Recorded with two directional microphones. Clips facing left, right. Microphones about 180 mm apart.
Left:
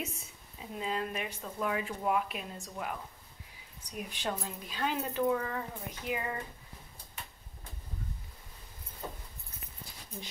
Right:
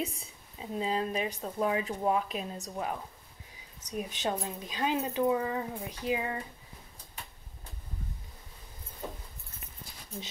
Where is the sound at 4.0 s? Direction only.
20° right (ahead or behind).